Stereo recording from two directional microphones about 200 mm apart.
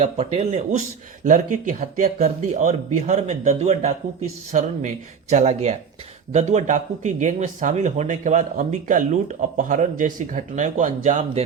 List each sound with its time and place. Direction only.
0.0 s a man's voice: 30° right (ahead or behind)